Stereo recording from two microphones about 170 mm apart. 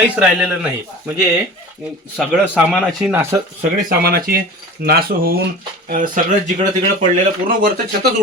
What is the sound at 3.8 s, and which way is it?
Speech, 65° right (ahead or behind).